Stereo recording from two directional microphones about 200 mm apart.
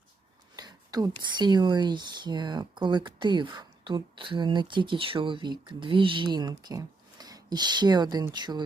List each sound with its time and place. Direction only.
0.5 s speech: 20° right (ahead or behind)